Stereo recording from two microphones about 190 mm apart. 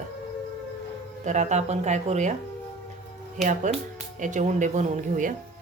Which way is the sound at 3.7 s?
40° right (ahead or behind).